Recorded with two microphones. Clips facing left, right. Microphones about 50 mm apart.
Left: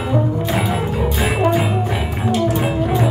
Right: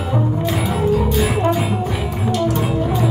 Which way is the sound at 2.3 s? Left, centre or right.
Left.